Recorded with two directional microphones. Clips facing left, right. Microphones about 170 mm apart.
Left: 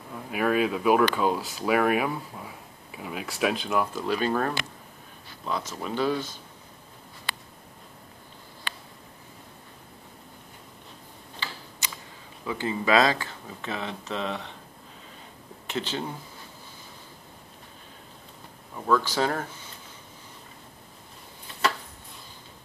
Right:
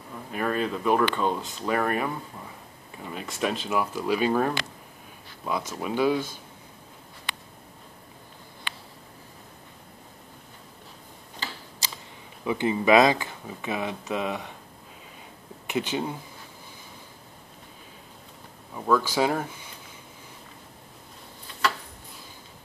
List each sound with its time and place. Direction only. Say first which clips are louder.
0.3 s speech: left 3 dB; 5° left (ahead or behind); by 6.4 s 10° right (ahead or behind)
11.8 s a sound: right 1 dB; 30° right (ahead or behind)
12.4 s speech: right 4 dB; 20° right (ahead or behind)
15.6 s speech: right 3 dB; 15° right (ahead or behind)
18.9 s speech: right 1 dB; 10° right (ahead or behind)